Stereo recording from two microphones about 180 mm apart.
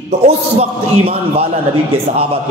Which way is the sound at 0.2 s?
35° right (ahead or behind).